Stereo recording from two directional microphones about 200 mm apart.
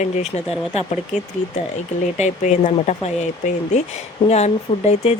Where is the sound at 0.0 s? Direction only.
35° left (ahead or behind).